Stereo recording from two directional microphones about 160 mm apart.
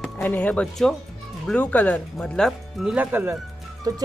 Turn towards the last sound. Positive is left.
turn(degrees=-25)  # may be behind; listen again after turning